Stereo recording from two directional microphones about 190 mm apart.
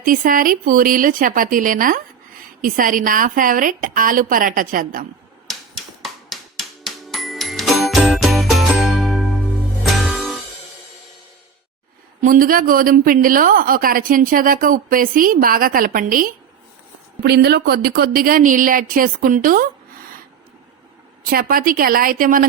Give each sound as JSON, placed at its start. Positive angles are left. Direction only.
{"t": 0.0, "sound": "a woman's voice", "side_deg": -45}
{"t": 5.5, "sound": "a sound", "side_deg": 0}
{"t": 6.8, "sound": "music", "side_deg": 0}
{"t": 12.2, "sound": "a woman's voice", "side_deg": -45}
{"t": 17.2, "sound": "a woman's voice", "side_deg": -55}
{"t": 21.2, "sound": "a woman's voice", "side_deg": -50}